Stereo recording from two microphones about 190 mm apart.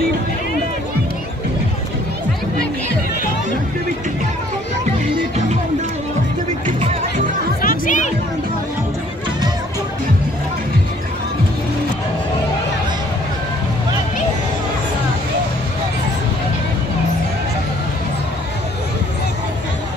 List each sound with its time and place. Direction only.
7.6 s chatter: 45° left (ahead or behind)